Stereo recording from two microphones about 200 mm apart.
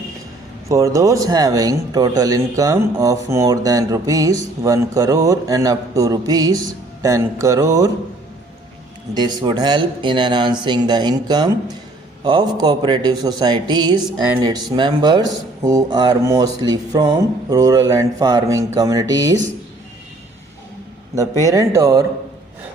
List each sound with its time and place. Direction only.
0.7 s speech: 15° right (ahead or behind)
9.1 s speech: 20° right (ahead or behind)
21.2 s speech: 15° right (ahead or behind)